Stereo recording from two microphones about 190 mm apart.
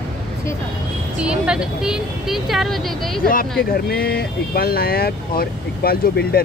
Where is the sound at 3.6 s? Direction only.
50° left (ahead or behind).